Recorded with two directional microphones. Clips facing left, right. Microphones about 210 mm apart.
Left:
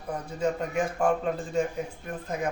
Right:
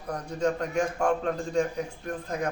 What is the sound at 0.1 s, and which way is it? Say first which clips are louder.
A man's voice: right 1 dB; 5° left (ahead or behind).